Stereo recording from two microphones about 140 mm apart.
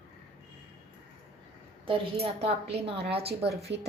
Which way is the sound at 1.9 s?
45° right (ahead or behind).